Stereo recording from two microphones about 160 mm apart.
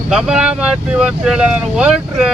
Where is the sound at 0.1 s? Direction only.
5° right (ahead or behind).